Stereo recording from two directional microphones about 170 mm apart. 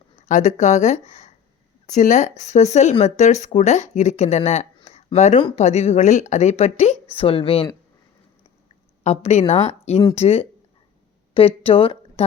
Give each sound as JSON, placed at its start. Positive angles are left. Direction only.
{"t": 0.3, "sound": "speech", "side_deg": 45}
{"t": 9.0, "sound": "a woman's voice", "side_deg": 40}